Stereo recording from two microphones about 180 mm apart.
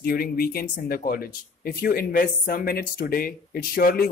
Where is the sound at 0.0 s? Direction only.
55° left (ahead or behind).